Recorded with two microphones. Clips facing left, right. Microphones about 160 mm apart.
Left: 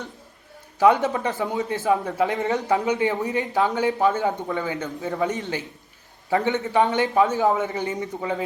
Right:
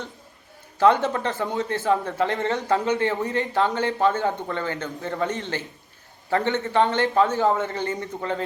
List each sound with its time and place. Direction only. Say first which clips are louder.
1.0 s speech: left 1 dB; 10° left (ahead or behind)
7.9 s speech: left 1 dB; 5° left (ahead or behind)